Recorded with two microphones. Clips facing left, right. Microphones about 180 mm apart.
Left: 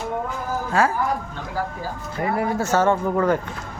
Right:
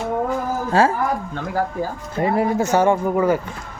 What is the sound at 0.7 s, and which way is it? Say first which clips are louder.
Speech: right 4 dB; 30° right (ahead or behind).